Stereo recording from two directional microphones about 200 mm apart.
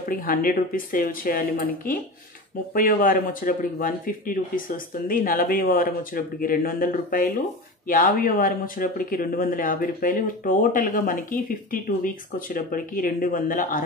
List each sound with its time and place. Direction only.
0.1 s speech: 45° left (ahead or behind)
2.7 s speech: 45° left (ahead or behind)